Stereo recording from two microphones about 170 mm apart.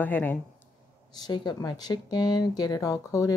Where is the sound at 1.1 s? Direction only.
25° left (ahead or behind).